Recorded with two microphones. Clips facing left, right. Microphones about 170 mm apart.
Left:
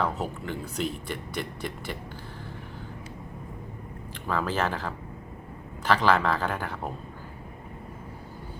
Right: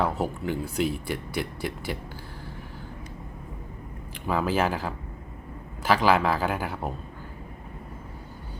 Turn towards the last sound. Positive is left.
turn(degrees=-5)  # may be behind; listen again after turning